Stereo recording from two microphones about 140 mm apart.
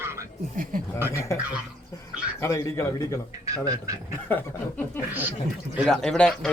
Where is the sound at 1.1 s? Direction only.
20° left (ahead or behind).